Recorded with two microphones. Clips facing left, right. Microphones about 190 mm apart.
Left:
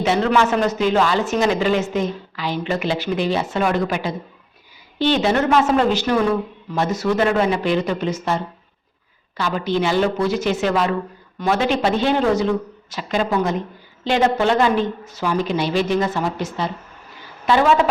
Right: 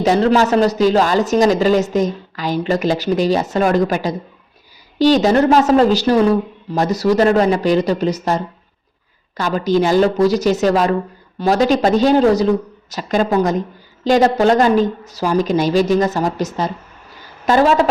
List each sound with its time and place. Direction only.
0.0 s speech: 35° right (ahead or behind)
9.4 s a woman's voice: 40° right (ahead or behind)